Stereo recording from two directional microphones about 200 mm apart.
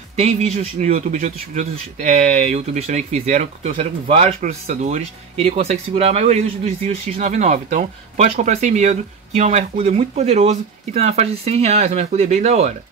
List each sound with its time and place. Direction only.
0.1 s a man's voice: 35° right (ahead or behind)